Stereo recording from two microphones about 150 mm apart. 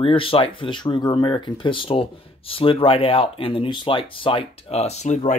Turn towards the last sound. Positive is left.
turn(degrees=50)  # may be behind; listen again after turning